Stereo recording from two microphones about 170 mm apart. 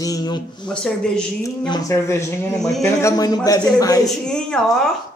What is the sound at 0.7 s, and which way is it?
Speech, 5° left (ahead or behind).